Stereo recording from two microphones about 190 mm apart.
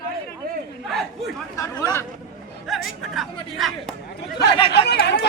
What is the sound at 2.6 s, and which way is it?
Music, centre (ahead or behind).